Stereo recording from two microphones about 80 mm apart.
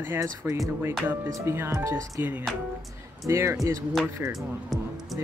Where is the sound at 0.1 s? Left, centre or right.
Right.